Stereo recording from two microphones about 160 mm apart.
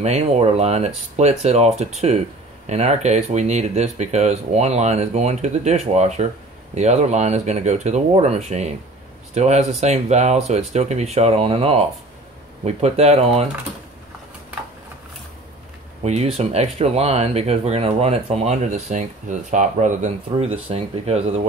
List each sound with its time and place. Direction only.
0.0 s speech: 40° right (ahead or behind)
16.0 s speech: 40° right (ahead or behind)